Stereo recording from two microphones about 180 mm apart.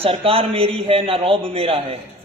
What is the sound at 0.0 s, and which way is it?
A man's voice, 30° right (ahead or behind).